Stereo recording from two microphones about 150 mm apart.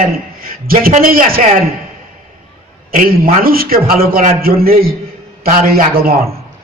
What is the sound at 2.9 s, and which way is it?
A man's voice, 70° right (ahead or behind).